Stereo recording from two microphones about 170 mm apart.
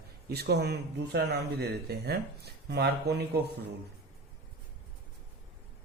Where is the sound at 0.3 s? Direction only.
70° right (ahead or behind).